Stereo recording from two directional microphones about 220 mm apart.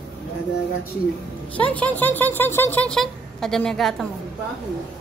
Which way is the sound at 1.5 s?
5° left (ahead or behind).